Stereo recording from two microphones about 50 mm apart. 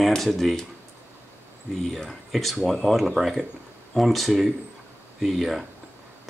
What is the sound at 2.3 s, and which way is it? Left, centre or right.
Speech, centre.